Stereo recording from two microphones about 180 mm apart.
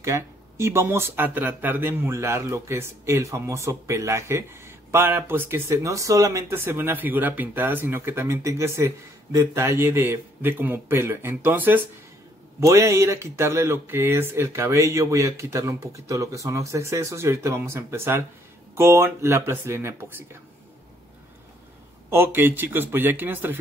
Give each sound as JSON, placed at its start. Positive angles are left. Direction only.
{"t": 0.0, "sound": "speech", "side_deg": -15}
{"t": 22.1, "sound": "speech", "side_deg": -10}